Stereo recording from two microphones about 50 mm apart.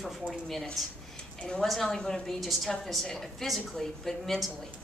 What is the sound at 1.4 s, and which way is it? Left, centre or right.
Speech, centre.